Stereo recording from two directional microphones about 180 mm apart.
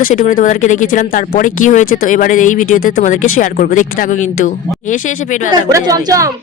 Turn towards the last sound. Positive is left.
turn(degrees=-20)  # may be behind; listen again after turning